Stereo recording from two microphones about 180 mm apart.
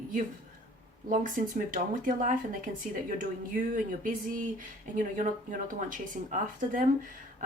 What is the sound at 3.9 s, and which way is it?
Speech, 45° right (ahead or behind).